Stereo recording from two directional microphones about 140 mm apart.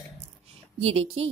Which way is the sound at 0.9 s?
45° right (ahead or behind).